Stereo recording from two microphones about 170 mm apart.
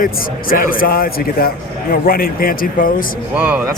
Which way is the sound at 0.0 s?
55° left (ahead or behind).